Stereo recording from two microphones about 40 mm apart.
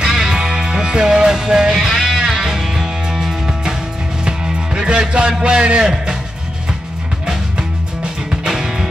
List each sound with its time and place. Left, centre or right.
0.0 s music: centre
5.4 s a man's voice: right
7.2 s music: right